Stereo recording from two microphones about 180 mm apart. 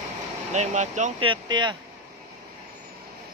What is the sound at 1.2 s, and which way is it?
Speech, 25° right (ahead or behind).